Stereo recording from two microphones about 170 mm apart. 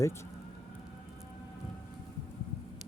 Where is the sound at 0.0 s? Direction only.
15° left (ahead or behind).